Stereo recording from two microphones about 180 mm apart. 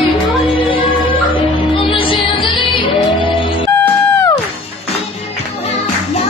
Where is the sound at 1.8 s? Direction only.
30° left (ahead or behind).